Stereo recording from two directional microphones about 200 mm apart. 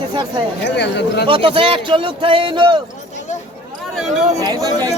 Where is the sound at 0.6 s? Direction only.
60° left (ahead or behind).